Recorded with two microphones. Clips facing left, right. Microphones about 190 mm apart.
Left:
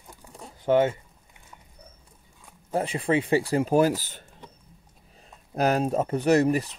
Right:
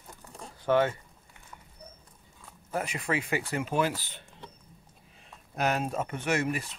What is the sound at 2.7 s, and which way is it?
Speech, 30° left (ahead or behind).